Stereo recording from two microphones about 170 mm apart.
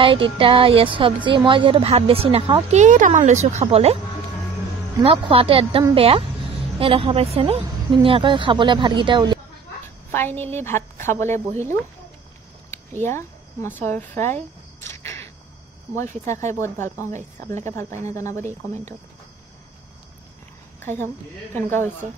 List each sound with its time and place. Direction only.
0.0 s a woman's voice: 30° right (ahead or behind)
5.0 s a woman's voice: 30° right (ahead or behind)
10.1 s a woman's voice: 10° left (ahead or behind)
16.4 s a woman's voice: 15° left (ahead or behind)
17.1 s speech: 45° right (ahead or behind)
18.0 s a woman's voice: 15° left (ahead or behind)
20.8 s a woman's voice: 10° left (ahead or behind)